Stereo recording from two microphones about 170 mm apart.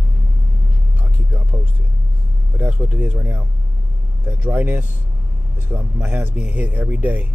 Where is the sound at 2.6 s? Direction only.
10° right (ahead or behind).